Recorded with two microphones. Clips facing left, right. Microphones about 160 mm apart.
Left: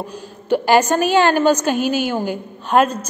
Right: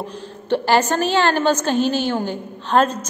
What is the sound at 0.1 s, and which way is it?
A woman's voice, 10° left (ahead or behind).